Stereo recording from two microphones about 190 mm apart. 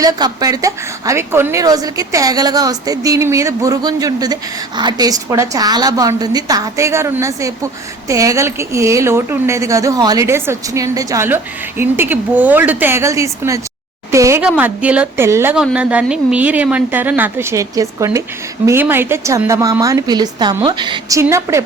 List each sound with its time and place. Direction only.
0.0 s a woman's voice: 20° right (ahead or behind)